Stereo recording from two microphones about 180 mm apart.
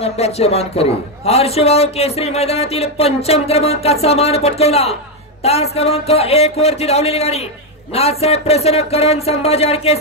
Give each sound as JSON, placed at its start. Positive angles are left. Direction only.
{"t": 0.0, "sound": "a man's voice", "side_deg": 35}